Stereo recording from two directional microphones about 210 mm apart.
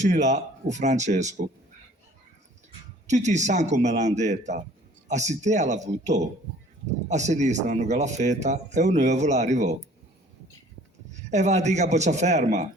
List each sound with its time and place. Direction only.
0.0 s a man's voice: 35° right (ahead or behind)
3.1 s a man's voice: 35° right (ahead or behind)
11.1 s a man's voice: 35° right (ahead or behind)